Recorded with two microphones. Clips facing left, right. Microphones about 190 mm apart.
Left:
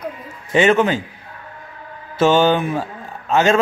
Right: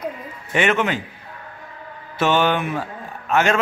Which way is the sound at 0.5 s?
30° left (ahead or behind).